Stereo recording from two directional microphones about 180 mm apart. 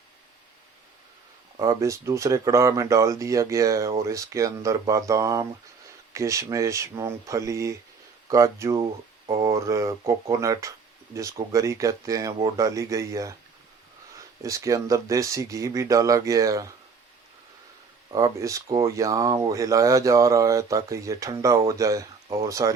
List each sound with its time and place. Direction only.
1.5 s speech: 20° right (ahead or behind)
18.1 s speech: 20° right (ahead or behind)